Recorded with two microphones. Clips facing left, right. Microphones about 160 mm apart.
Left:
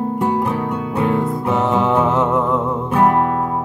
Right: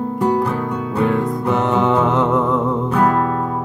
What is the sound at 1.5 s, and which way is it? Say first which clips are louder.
Mantra: right 1 dB; centre (ahead or behind).